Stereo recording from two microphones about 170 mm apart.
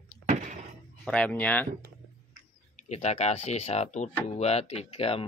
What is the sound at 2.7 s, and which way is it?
Speech, 40° left (ahead or behind).